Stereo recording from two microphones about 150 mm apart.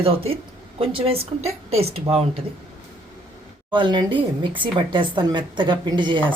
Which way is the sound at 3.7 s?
30° right (ahead or behind).